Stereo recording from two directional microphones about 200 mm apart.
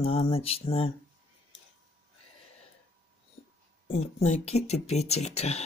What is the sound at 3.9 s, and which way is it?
Speech, 30° left (ahead or behind).